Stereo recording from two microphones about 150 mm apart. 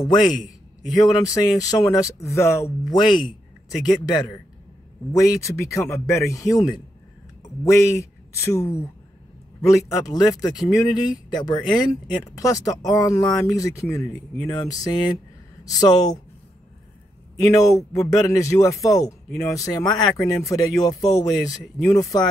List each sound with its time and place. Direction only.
0.0 s a man's voice: 30° left (ahead or behind)
3.0 s a man's voice: 30° left (ahead or behind)
17.5 s a man's voice: 20° left (ahead or behind)